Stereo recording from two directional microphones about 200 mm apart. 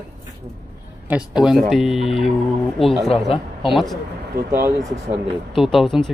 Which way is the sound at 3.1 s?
30° left (ahead or behind).